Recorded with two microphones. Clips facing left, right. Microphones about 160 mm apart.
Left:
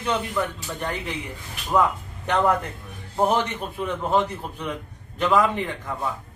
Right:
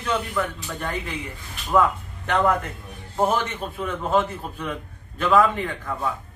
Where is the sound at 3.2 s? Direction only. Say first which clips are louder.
Left 1 dB; 15° left (ahead or behind).